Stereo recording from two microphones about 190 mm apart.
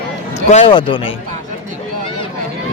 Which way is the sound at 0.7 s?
25° left (ahead or behind).